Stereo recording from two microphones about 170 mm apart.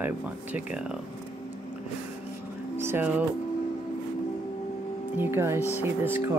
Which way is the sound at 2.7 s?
15° right (ahead or behind).